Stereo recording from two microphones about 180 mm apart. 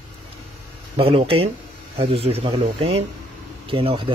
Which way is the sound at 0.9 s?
30° right (ahead or behind).